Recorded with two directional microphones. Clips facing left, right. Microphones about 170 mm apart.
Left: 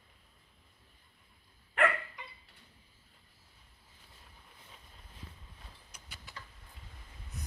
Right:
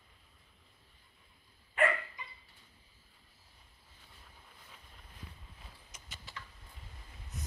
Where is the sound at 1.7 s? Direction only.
70° left (ahead or behind).